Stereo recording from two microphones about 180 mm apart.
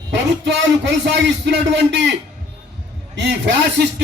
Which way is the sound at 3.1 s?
75° right (ahead or behind).